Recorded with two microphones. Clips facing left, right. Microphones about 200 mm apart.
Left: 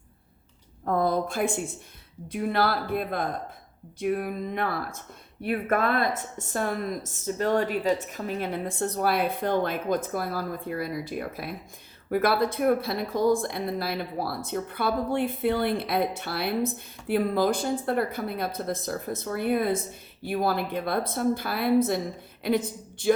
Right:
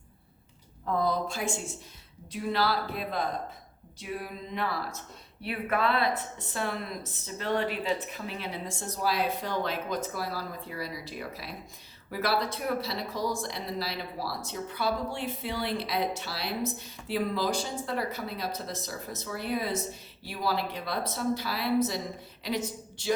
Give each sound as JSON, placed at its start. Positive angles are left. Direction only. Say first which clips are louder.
{"t": 0.9, "sound": "speech", "louder": "left 4 dB", "side_deg": 50}